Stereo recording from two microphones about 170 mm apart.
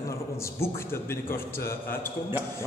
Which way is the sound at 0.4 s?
15° left (ahead or behind).